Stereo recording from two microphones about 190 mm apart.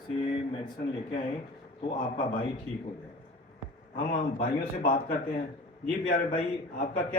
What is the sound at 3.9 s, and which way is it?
A man's voice, 50° left (ahead or behind).